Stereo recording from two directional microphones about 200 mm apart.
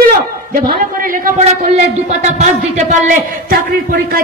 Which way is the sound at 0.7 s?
45° right (ahead or behind).